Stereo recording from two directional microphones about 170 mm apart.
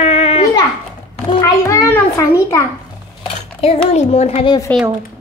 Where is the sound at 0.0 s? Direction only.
35° left (ahead or behind).